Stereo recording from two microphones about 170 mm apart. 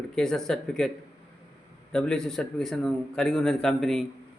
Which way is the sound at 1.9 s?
5° left (ahead or behind).